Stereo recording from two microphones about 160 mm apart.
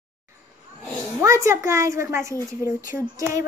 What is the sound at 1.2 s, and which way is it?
A child's voice, 20° right (ahead or behind).